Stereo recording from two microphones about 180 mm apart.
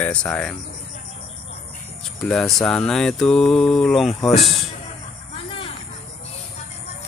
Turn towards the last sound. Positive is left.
turn(degrees=30)  # may be behind; listen again after turning